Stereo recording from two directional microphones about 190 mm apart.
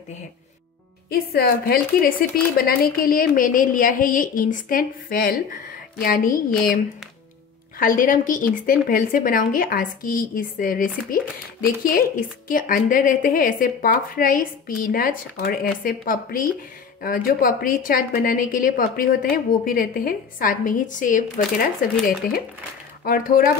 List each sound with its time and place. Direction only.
1.3 s speech: 50° left (ahead or behind)
7.8 s speech: 45° left (ahead or behind)
23.0 s speech: 45° left (ahead or behind)